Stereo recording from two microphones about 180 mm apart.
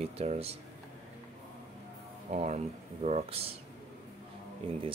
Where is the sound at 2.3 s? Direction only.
35° right (ahead or behind).